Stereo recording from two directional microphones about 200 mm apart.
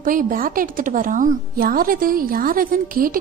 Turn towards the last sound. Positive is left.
turn(degrees=-45)  # may be behind; listen again after turning